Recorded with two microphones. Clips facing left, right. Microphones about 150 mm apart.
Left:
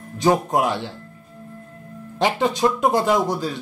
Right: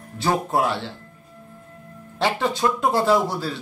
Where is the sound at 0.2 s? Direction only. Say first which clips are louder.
Left 3 dB; 15° left (ahead or behind).